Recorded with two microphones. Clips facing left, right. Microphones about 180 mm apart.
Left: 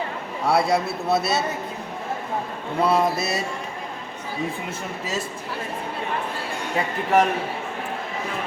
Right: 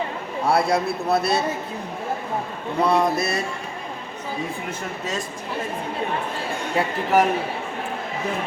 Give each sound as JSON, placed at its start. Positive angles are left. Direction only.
{"t": 0.4, "sound": "a man's voice", "side_deg": 0}
{"t": 2.8, "sound": "a man's voice", "side_deg": 5}
{"t": 6.7, "sound": "a man's voice", "side_deg": -5}